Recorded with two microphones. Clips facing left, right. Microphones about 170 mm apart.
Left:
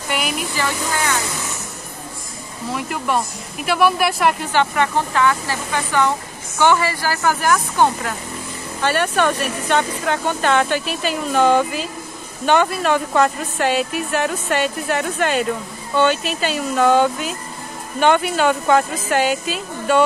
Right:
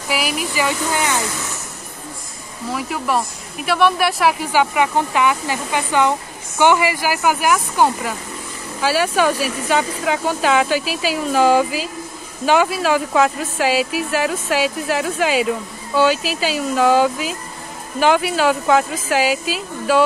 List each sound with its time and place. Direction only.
0.1 s a woman's voice: 5° right (ahead or behind)
0.7 s speech: 15° right (ahead or behind)
2.7 s a woman's voice: centre (ahead or behind)